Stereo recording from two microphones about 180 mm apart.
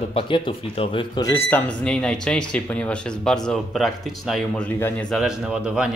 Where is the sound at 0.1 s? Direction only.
30° left (ahead or behind).